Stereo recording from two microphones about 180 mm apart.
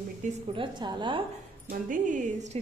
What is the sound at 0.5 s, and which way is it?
Speech, 25° right (ahead or behind).